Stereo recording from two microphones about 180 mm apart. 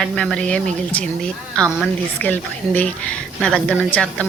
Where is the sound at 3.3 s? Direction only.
Centre (ahead or behind).